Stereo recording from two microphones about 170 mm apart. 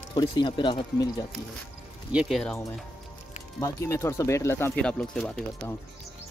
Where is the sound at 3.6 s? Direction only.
15° left (ahead or behind).